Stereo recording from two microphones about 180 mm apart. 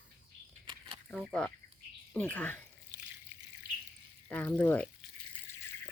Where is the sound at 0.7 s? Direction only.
25° right (ahead or behind).